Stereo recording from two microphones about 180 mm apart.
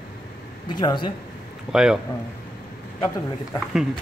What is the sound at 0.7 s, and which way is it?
Speech, 25° left (ahead or behind).